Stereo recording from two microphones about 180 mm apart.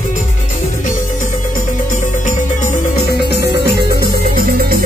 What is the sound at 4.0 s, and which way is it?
Music, 55° right (ahead or behind).